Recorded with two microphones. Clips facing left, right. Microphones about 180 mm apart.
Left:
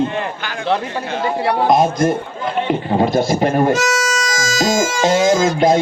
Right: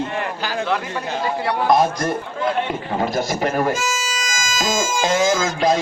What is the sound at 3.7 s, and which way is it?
Speech, 75° left (ahead or behind).